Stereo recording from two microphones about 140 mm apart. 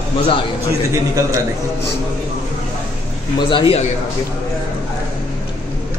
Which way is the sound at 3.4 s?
35° left (ahead or behind).